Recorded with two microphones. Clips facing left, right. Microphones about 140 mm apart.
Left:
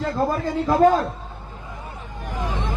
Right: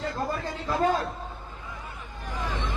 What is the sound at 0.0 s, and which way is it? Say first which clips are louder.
Speech: left 8 dB; 45° left (ahead or behind).